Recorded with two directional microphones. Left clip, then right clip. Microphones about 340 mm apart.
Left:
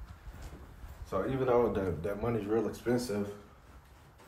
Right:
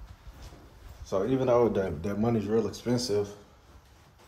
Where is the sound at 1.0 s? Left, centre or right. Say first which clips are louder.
Right 5 dB; centre.